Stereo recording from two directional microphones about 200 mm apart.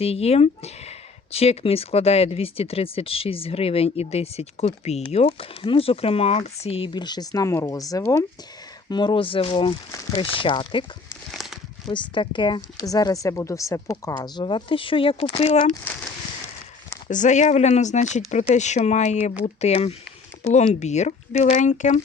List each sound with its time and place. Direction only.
0.0 s speech: 30° left (ahead or behind)
11.9 s speech: 25° left (ahead or behind)
17.1 s speech: 40° left (ahead or behind)